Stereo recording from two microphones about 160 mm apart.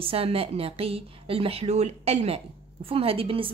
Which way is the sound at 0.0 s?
35° right (ahead or behind).